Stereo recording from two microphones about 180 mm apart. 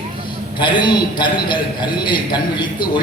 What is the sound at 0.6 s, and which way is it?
A man's voice, 25° left (ahead or behind).